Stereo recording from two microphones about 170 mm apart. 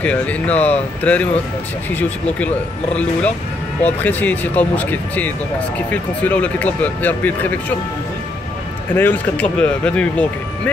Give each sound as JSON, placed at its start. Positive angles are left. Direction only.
{"t": 0.0, "sound": "speech", "side_deg": 10}
{"t": 8.9, "sound": "speech", "side_deg": 10}